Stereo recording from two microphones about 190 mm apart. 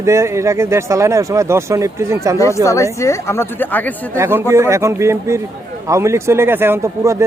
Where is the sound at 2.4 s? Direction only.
15° left (ahead or behind).